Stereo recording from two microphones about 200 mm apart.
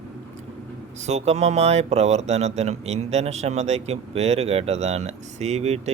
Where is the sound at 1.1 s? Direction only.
35° right (ahead or behind).